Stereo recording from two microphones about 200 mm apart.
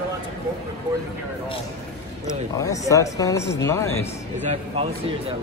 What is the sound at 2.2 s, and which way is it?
A man's voice, 15° left (ahead or behind).